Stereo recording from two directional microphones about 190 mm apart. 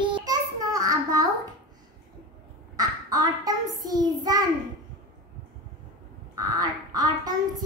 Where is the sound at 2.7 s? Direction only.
20° right (ahead or behind).